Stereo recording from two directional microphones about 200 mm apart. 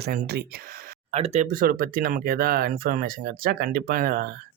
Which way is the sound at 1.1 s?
30° right (ahead or behind).